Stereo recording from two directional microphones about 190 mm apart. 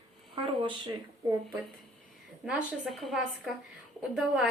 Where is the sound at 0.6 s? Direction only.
25° right (ahead or behind).